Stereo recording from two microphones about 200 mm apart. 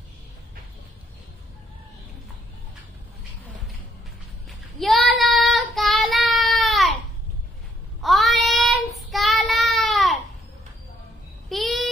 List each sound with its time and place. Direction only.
4.5 s child singing: centre (ahead or behind)
8.0 s child singing: centre (ahead or behind)
11.4 s a sound: centre (ahead or behind)